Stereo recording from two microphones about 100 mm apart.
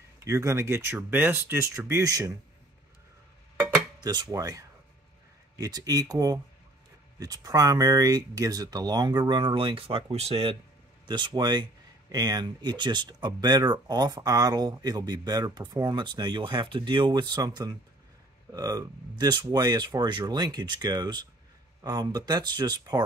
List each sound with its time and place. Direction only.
0.2 s speech: 30° right (ahead or behind)
1.9 s speech: 35° right (ahead or behind)
3.5 s cutlery: 20° right (ahead or behind)
4.0 s speech: 45° right (ahead or behind); by 10.6 s 75° right (ahead or behind)
11.1 s speech: 50° right (ahead or behind)